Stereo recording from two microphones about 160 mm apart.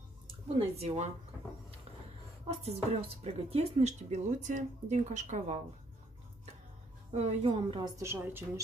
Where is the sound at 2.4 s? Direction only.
40° right (ahead or behind).